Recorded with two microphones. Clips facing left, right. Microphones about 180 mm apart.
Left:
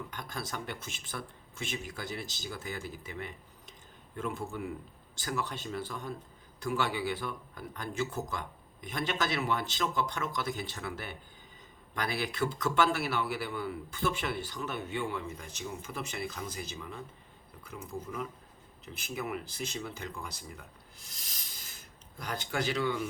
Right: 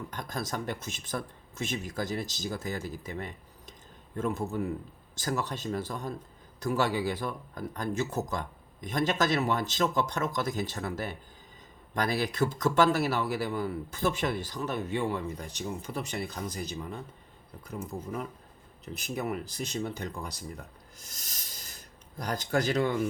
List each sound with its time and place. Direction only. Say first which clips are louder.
0.1 s speech: right 5 dB; 40° right (ahead or behind)